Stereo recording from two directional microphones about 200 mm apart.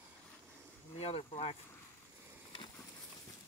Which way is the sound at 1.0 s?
30° left (ahead or behind).